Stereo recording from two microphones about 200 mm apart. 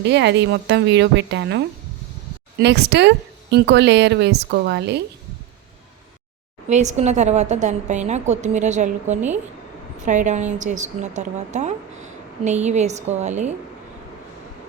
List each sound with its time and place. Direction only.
0.0 s speech: 60° right (ahead or behind)
6.7 s a woman's voice: 35° right (ahead or behind)